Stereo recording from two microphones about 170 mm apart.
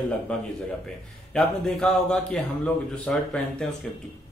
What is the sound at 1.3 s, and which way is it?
A man's voice, 5° left (ahead or behind).